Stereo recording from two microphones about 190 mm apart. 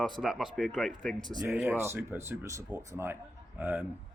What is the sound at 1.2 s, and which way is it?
Speech, 20° right (ahead or behind).